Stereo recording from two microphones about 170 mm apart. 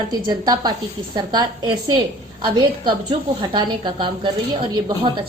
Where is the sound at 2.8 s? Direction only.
25° right (ahead or behind).